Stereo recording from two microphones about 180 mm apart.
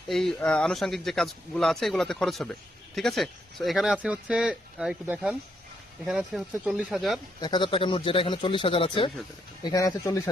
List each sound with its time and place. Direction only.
0.1 s speech: centre (ahead or behind)
7.4 s speech: 25° left (ahead or behind)